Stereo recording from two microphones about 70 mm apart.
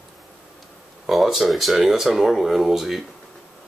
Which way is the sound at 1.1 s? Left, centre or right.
Centre.